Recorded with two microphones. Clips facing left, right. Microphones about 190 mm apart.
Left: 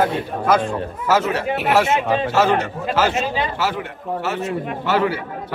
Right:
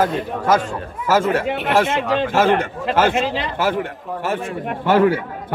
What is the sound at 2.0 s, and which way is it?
Speech, 75° right (ahead or behind).